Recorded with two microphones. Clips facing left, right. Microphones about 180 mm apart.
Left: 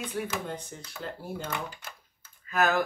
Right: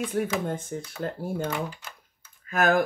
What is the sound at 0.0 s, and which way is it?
Speech, 45° right (ahead or behind).